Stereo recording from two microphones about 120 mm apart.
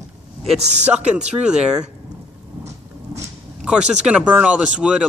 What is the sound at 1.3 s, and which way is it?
Speech, 5° right (ahead or behind).